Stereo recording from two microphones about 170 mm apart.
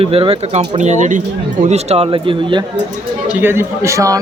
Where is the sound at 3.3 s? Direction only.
10° right (ahead or behind).